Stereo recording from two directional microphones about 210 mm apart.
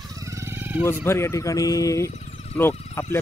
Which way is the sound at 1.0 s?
10° left (ahead or behind).